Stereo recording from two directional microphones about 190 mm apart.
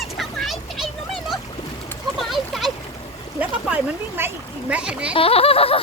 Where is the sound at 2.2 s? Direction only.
Centre (ahead or behind).